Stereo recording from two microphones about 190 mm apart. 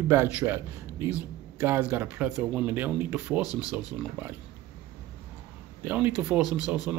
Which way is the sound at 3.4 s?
20° left (ahead or behind).